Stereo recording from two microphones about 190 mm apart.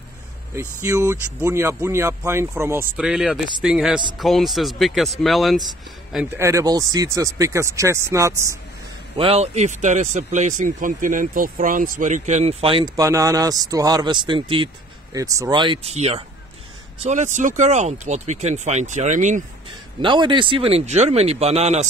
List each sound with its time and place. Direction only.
0.6 s speech: 15° right (ahead or behind)
6.3 s speech: 15° right (ahead or behind)
9.1 s speech: 30° right (ahead or behind)
20.0 s speech: 25° right (ahead or behind)